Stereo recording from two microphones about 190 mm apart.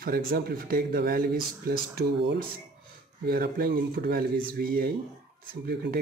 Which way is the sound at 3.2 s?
55° right (ahead or behind).